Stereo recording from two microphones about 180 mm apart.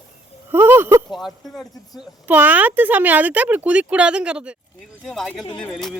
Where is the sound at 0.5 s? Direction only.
10° right (ahead or behind).